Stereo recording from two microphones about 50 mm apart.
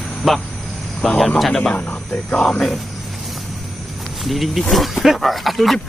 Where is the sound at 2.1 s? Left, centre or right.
Left.